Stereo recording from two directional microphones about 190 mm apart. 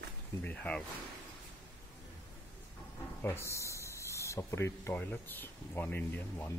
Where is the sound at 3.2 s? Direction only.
15° left (ahead or behind).